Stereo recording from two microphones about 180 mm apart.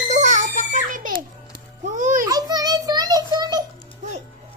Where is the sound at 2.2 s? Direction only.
20° right (ahead or behind).